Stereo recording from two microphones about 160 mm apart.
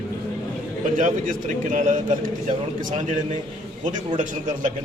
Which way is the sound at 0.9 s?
55° right (ahead or behind).